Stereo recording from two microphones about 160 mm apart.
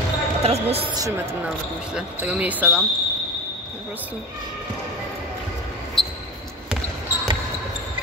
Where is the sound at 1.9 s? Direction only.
10° right (ahead or behind).